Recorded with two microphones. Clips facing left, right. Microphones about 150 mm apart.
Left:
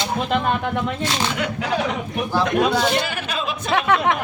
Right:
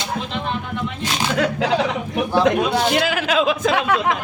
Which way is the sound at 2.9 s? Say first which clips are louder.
Right 5 dB; 90° right.